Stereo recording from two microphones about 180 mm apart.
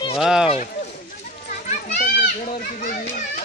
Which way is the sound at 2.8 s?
50° left (ahead or behind).